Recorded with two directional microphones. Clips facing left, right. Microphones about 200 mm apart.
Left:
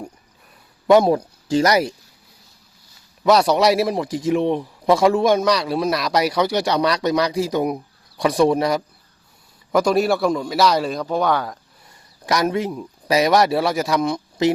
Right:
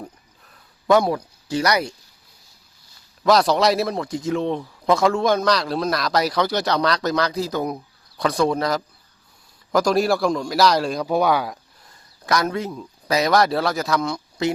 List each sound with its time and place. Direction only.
0.9 s speech: 20° left (ahead or behind)
3.2 s a man's voice: 10° left (ahead or behind)
11.9 s speech: 15° left (ahead or behind)